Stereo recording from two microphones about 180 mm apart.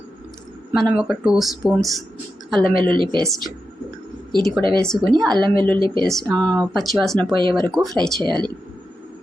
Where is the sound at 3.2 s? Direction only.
Centre (ahead or behind).